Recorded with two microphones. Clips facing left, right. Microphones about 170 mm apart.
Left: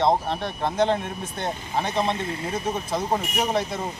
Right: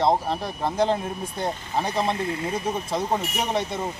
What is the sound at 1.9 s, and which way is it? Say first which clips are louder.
Speech: left 1 dB; 25° left (ahead or behind).